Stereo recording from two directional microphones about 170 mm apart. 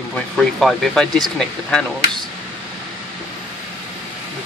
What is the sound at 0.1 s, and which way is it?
Speech, centre (ahead or behind).